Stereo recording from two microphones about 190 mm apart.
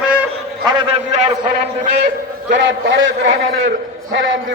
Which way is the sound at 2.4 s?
75° right (ahead or behind).